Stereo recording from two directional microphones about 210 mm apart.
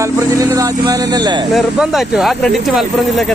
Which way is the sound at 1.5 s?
Centre (ahead or behind).